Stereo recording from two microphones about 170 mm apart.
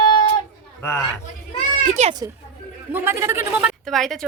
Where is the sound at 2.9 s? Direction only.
15° right (ahead or behind).